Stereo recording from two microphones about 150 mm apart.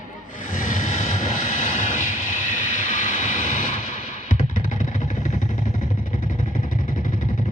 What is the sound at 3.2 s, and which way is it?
Vehicle, 60° left (ahead or behind).